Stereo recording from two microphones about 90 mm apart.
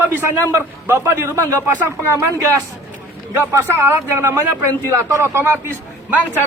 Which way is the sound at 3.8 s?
30° right (ahead or behind).